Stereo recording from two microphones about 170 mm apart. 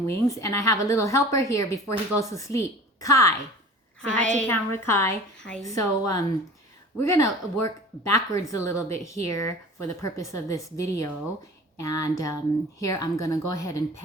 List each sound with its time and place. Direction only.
0.0 s a woman's voice: 20° left (ahead or behind)